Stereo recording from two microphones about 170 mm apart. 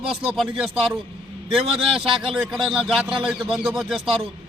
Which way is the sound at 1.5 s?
Centre (ahead or behind).